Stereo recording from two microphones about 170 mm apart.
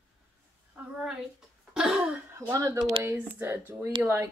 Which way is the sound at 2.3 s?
15° right (ahead or behind).